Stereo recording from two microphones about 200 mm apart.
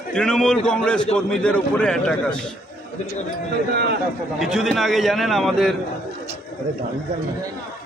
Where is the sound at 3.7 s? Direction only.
55° right (ahead or behind).